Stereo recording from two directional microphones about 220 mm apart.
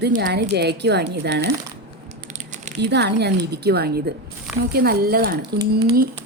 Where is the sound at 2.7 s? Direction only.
50° right (ahead or behind).